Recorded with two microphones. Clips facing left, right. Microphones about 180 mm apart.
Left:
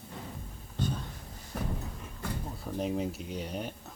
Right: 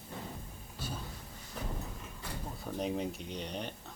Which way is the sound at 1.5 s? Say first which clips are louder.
Left 6 dB; 60° left (ahead or behind).